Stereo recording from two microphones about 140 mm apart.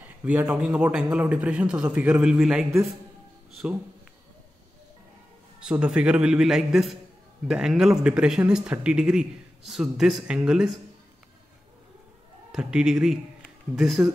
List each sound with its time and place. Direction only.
0.0 s a man's voice: 10° right (ahead or behind)
5.6 s speech: 5° right (ahead or behind)
12.5 s speech: 5° right (ahead or behind)
14.0 s a man's voice: 15° right (ahead or behind)